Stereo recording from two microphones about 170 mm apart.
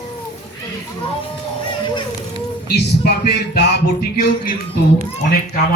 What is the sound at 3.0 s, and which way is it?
Speech, 70° left (ahead or behind).